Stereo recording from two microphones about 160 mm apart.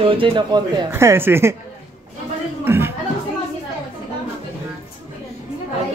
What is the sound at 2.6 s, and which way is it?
Music, 15° right (ahead or behind).